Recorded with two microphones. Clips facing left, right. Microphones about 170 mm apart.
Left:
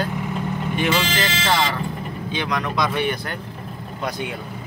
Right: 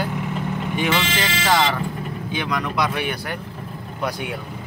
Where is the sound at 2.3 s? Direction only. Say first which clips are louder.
Even; 10° right (ahead or behind).